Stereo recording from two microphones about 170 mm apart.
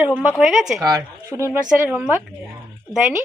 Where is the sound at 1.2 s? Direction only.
15° right (ahead or behind).